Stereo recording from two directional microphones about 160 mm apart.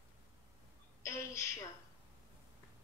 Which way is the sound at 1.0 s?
20° left (ahead or behind).